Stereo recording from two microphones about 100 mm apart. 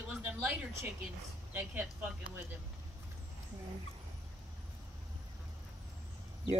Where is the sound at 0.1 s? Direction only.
20° right (ahead or behind).